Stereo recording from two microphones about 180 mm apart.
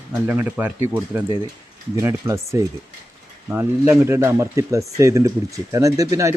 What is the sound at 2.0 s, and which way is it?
Speech, 15° right (ahead or behind).